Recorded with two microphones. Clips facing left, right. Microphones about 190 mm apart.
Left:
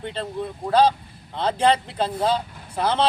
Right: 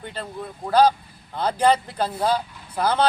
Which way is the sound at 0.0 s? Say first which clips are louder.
Left 4 dB; 5° right (ahead or behind).